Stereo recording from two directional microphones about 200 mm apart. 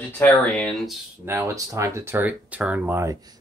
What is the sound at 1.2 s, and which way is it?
Speech, 15° right (ahead or behind).